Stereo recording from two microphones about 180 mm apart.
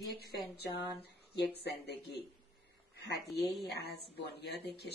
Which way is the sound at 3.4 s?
Centre (ahead or behind).